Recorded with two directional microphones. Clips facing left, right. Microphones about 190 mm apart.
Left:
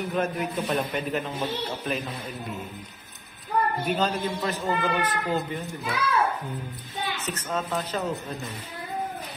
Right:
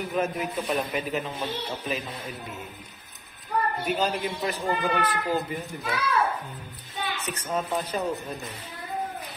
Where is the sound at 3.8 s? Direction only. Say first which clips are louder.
Left 1 dB; 10° right (ahead or behind).